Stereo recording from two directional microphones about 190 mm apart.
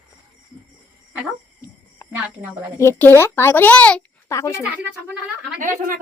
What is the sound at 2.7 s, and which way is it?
Speech, 15° left (ahead or behind).